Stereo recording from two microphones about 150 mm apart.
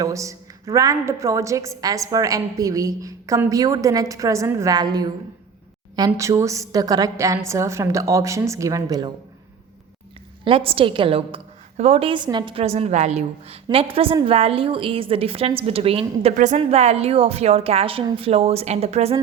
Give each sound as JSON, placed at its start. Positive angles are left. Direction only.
{"t": 0.0, "sound": "a woman's voice", "side_deg": -20}
{"t": 6.1, "sound": "a woman's voice", "side_deg": -20}
{"t": 10.4, "sound": "a woman's voice", "side_deg": -35}
{"t": 12.6, "sound": "a woman's voice", "side_deg": -45}
{"t": 16.3, "sound": "a woman's voice", "side_deg": -55}